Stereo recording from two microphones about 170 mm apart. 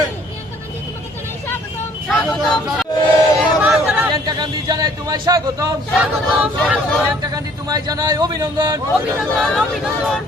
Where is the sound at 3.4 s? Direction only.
5° right (ahead or behind).